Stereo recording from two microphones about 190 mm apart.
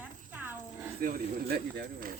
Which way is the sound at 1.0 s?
50° right (ahead or behind).